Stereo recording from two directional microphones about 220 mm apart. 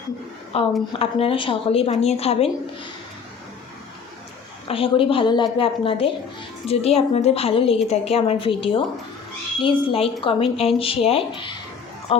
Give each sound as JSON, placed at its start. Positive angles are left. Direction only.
{"t": 0.5, "sound": "speech", "side_deg": 25}
{"t": 4.7, "sound": "speech", "side_deg": 25}